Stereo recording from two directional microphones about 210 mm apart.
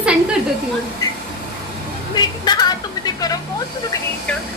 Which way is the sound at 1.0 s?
15° left (ahead or behind).